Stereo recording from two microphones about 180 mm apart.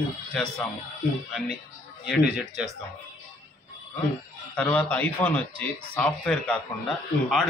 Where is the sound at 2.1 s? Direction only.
Centre (ahead or behind).